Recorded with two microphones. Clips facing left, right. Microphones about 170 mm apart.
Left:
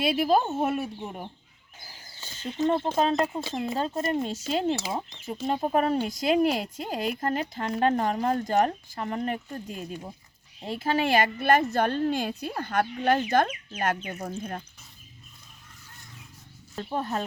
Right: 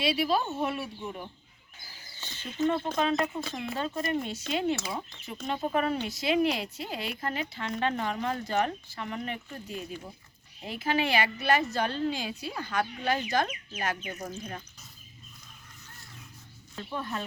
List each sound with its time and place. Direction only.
0.0 s a woman's voice: 50° left (ahead or behind)
2.6 s a woman's voice: 35° left (ahead or behind); by 14.6 s 55° left (ahead or behind)
16.7 s speech: 40° left (ahead or behind)